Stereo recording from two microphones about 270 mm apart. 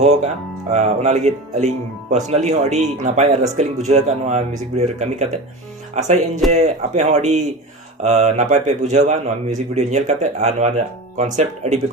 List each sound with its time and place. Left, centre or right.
0.0 s speech: right